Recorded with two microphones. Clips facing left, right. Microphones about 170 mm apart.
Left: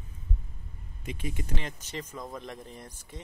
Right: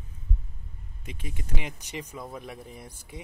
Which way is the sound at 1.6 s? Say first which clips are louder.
Right 1 dB; 15° right (ahead or behind).